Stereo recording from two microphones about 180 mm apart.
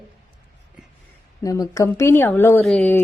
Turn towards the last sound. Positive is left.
turn(degrees=5)  # may be behind; listen again after turning